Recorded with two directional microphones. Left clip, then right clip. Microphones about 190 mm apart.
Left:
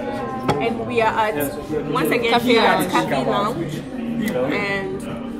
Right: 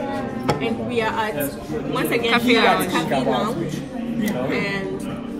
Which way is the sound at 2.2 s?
20° left (ahead or behind).